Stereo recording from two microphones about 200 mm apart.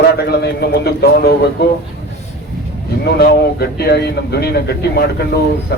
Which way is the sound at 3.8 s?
55° left (ahead or behind).